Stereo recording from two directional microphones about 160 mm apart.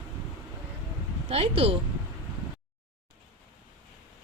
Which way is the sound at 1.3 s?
40° right (ahead or behind).